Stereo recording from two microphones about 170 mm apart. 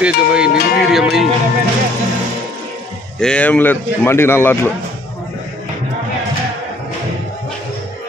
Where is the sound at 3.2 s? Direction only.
5° left (ahead or behind).